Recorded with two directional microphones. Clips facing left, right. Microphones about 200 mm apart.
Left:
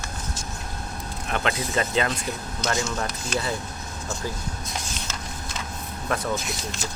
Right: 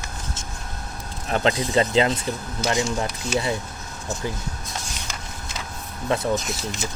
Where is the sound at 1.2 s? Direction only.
35° right (ahead or behind).